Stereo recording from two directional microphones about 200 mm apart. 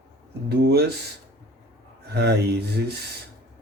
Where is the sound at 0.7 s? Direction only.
55° right (ahead or behind).